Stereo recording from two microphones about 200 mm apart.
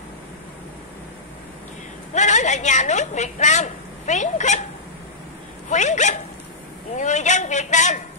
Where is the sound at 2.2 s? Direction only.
35° left (ahead or behind).